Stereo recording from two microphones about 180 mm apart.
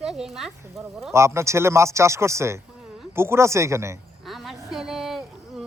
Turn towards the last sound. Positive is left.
turn(degrees=0)  # may be behind; listen again after turning